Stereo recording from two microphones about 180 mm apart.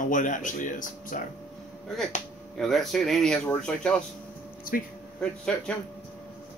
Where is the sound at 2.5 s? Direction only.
Centre (ahead or behind).